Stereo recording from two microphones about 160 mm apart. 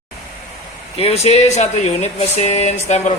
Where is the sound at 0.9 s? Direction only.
40° left (ahead or behind).